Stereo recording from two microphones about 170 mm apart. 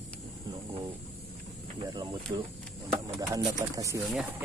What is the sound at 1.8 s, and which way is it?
Cricket, 25° right (ahead or behind).